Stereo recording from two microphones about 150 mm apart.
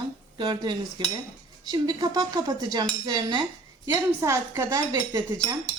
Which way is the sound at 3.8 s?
20° right (ahead or behind).